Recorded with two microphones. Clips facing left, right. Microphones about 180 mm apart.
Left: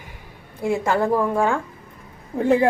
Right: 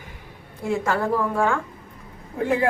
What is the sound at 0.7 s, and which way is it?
Speech, 20° left (ahead or behind).